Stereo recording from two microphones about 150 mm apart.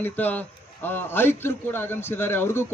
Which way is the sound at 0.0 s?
10° left (ahead or behind).